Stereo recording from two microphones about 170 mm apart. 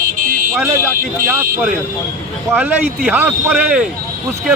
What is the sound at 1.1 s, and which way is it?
Speech, 15° right (ahead or behind).